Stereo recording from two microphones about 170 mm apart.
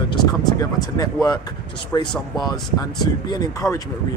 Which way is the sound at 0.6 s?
20° left (ahead or behind).